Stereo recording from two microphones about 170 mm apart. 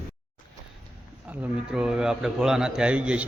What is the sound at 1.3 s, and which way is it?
A man's voice, 5° right (ahead or behind).